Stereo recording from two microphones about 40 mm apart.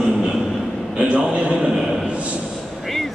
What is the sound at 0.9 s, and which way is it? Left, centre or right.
Speech, right.